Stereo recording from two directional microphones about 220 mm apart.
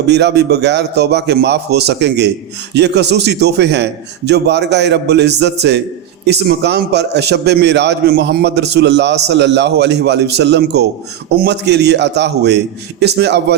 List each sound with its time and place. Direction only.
0.1 s a man's voice: 50° right (ahead or behind)